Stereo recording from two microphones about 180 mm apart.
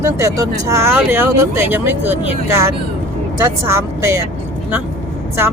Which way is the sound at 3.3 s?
15° right (ahead or behind).